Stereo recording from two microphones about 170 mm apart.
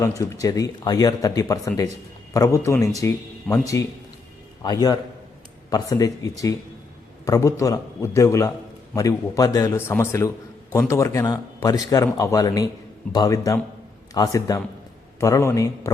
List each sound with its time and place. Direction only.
0.2 s a man's voice: 20° left (ahead or behind)
3.5 s speech: centre (ahead or behind)
4.6 s a man's voice: 25° left (ahead or behind)